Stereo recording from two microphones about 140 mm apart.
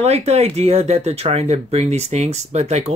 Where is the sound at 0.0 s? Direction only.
50° right (ahead or behind).